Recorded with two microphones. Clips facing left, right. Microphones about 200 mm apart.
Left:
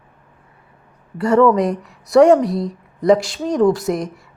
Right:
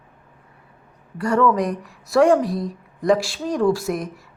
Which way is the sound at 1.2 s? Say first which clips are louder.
Left 5 dB; 20° left (ahead or behind).